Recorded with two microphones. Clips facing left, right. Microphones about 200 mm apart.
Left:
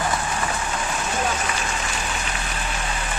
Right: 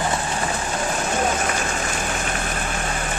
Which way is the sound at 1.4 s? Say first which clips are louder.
Right 3 dB; 45° right (ahead or behind).